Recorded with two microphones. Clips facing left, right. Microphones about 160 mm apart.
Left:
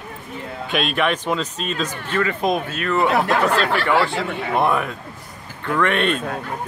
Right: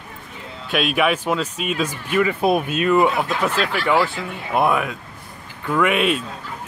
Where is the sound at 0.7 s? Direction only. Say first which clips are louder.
Right 2 dB; 5° right (ahead or behind).